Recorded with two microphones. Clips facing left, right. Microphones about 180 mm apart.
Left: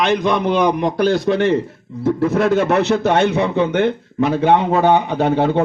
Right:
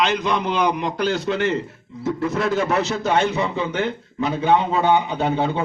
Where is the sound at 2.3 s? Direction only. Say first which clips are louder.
Left 5 dB; 60° left (ahead or behind).